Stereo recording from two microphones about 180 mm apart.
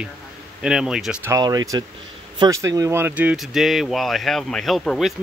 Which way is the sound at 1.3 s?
20° right (ahead or behind).